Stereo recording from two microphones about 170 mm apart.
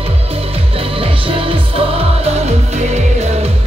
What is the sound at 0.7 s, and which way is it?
Music, 30° right (ahead or behind).